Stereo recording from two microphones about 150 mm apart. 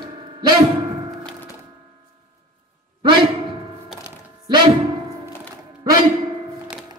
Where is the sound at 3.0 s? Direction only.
35° right (ahead or behind).